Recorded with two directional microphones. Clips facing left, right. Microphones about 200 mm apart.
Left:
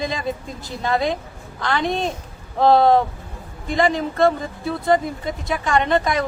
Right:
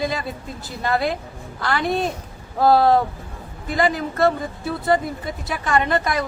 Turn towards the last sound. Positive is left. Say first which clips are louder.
# left 2 dB
turn(degrees=0)  # may be behind; listen again after turning